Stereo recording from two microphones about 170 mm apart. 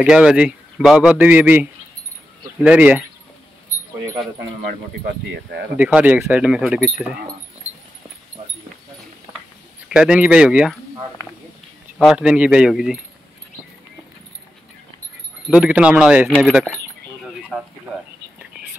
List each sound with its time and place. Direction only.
0.1 s a man's voice: 5° right (ahead or behind)
4.6 s speech: 80° right
5.8 s a man's voice: 10° right (ahead or behind)
9.8 s speech: 5° right (ahead or behind)
12.0 s speech: 5° right (ahead or behind)
15.5 s a man's voice: 5° right (ahead or behind)